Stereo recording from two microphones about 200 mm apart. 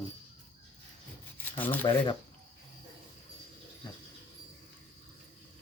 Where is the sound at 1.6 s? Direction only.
10° left (ahead or behind).